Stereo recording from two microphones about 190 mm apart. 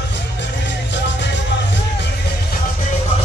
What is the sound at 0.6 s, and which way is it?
Music, 70° left (ahead or behind).